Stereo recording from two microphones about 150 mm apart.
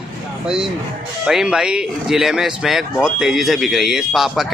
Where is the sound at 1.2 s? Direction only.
5° right (ahead or behind).